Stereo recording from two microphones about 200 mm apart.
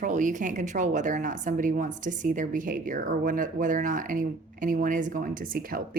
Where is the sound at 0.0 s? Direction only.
40° right (ahead or behind).